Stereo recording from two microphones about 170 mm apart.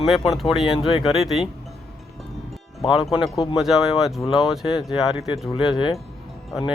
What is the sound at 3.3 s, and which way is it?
Speech, 25° left (ahead or behind).